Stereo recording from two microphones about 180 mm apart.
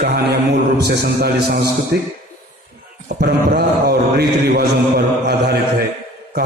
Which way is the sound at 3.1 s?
60° right (ahead or behind).